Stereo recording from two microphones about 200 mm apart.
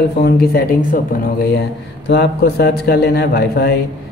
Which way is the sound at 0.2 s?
50° left (ahead or behind).